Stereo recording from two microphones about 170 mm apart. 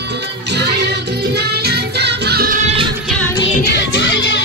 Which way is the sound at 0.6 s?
75° right (ahead or behind).